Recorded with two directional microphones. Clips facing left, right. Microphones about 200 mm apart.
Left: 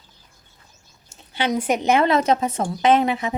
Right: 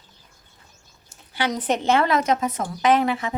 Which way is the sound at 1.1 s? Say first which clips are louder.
Left 1 dB; 20° left (ahead or behind).